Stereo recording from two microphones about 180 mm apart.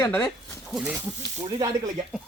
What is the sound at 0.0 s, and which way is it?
Speech, 10° left (ahead or behind).